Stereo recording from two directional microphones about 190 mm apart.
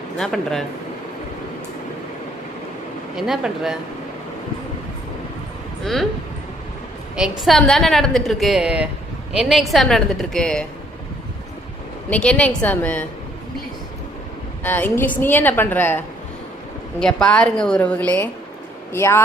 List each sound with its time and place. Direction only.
0.2 s a woman's voice: centre (ahead or behind)
3.2 s a woman's voice: centre (ahead or behind)
5.8 s a woman's voice: centre (ahead or behind)
7.2 s a woman's voice: centre (ahead or behind)
12.1 s a woman's voice: 5° left (ahead or behind)
14.6 s a woman's voice: 10° left (ahead or behind)